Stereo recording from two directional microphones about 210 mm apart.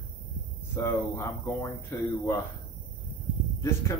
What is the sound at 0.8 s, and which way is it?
Speech, 10° left (ahead or behind).